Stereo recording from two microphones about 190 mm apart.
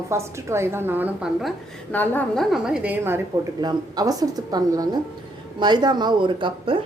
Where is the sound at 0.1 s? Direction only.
15° right (ahead or behind).